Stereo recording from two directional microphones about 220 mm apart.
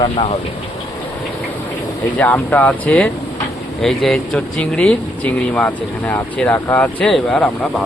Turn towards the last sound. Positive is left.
turn(degrees=5)  # may be behind; listen again after turning